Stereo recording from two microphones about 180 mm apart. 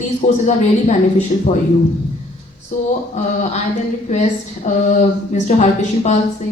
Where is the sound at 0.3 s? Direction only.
40° left (ahead or behind).